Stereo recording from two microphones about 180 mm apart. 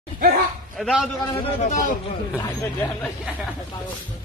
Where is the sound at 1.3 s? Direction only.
30° left (ahead or behind).